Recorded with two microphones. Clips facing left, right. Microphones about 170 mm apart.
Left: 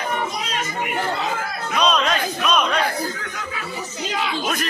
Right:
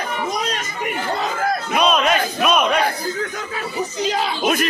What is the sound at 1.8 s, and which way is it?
Battle cry, 10° right (ahead or behind).